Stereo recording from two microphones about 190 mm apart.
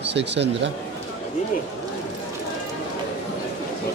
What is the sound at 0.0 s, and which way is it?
Speech, 65° right (ahead or behind).